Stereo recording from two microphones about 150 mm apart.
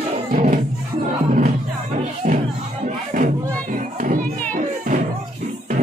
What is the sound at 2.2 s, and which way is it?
Music, 65° right (ahead or behind).